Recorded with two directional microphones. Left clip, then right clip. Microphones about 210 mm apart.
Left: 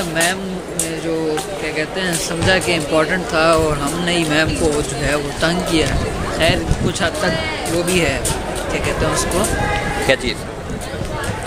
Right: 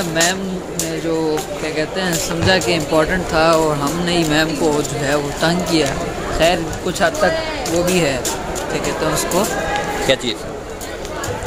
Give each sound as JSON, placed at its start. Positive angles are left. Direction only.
{"t": 0.1, "sound": "speech", "side_deg": -25}
{"t": 1.8, "sound": "speech", "side_deg": -25}
{"t": 10.0, "sound": "speech", "side_deg": 5}